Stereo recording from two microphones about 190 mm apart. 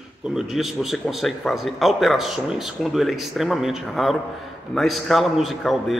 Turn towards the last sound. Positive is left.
turn(degrees=0)  # may be behind; listen again after turning